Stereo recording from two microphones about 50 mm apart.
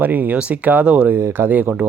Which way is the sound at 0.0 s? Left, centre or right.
Right.